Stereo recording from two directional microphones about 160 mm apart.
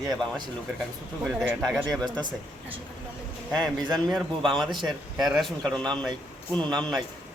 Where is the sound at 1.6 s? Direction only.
Centre (ahead or behind).